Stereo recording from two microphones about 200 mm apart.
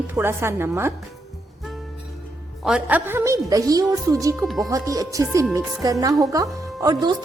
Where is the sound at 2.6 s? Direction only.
5° right (ahead or behind).